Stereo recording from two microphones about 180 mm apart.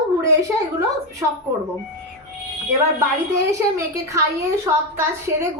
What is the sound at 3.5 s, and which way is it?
A woman's voice, 15° right (ahead or behind).